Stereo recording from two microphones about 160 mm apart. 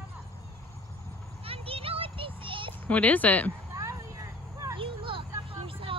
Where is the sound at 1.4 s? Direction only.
35° right (ahead or behind).